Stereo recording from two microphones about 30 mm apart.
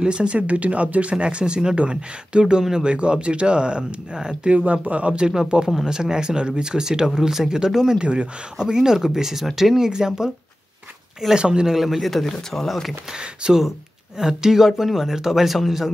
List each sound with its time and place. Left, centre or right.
0.0 s speech: right
0.4 s speech: right
1.1 s speech: right
4.8 s speech: right
5.5 s speech: right
8.0 s speech: right; by 9.8 s centre
9.8 s speech: right
11.3 s speech: right
11.7 s a man's voice: centre
12.1 s speech: centre
13.5 s speech: centre